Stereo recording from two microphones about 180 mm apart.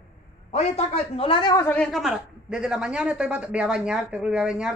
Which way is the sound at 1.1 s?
30° left (ahead or behind).